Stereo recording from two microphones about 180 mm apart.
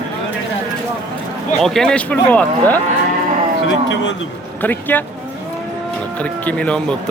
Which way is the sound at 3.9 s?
80° left.